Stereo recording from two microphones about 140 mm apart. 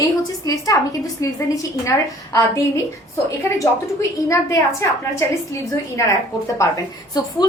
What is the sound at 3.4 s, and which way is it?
A woman's voice, 25° left (ahead or behind).